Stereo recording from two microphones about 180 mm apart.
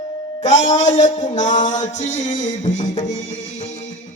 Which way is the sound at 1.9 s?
40° left (ahead or behind).